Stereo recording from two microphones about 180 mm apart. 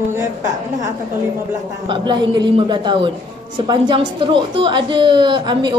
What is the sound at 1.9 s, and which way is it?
A woman's voice, 25° right (ahead or behind).